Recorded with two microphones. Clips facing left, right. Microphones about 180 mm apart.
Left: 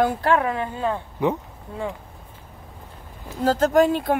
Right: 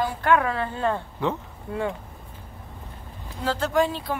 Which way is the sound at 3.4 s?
40° left (ahead or behind).